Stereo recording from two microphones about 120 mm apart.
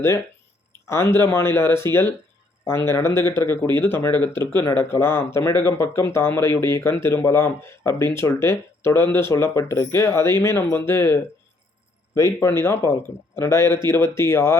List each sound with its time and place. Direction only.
0.9 s speech: 20° left (ahead or behind)